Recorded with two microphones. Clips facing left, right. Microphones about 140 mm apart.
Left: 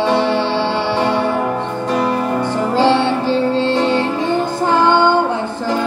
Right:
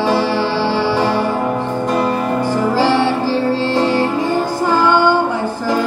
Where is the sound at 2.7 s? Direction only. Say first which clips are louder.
Left 3 dB; 20° left (ahead or behind).